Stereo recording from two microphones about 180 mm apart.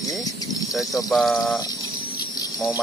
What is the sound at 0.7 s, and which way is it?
Speech, centre (ahead or behind).